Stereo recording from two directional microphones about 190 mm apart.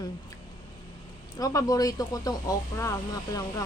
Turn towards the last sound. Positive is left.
turn(degrees=20)  # may be behind; listen again after turning